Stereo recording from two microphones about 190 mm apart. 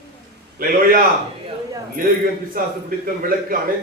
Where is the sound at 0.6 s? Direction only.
45° right (ahead or behind).